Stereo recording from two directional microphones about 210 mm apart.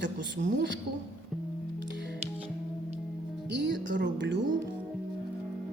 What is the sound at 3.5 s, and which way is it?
Speech, 60° right (ahead or behind).